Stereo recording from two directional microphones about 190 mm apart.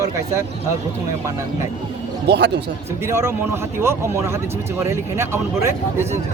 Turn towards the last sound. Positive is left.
turn(degrees=-15)  # may be behind; listen again after turning